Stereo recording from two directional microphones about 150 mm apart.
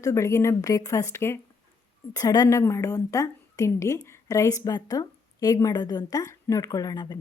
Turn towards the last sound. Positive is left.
turn(degrees=25)  # may be behind; listen again after turning